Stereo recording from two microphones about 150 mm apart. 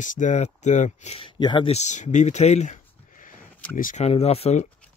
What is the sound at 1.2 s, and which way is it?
Speech, 30° left (ahead or behind).